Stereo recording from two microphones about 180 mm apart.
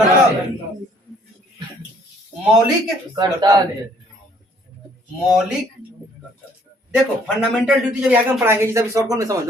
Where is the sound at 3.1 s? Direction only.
20° right (ahead or behind).